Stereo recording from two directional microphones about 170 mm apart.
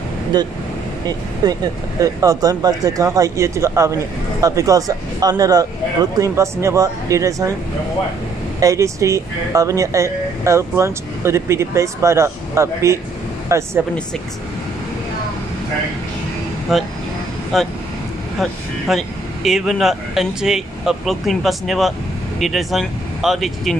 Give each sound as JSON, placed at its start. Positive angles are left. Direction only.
{"t": 0.3, "sound": "speech", "side_deg": -25}
{"t": 8.5, "sound": "speech", "side_deg": -20}
{"t": 16.7, "sound": "speech", "side_deg": 0}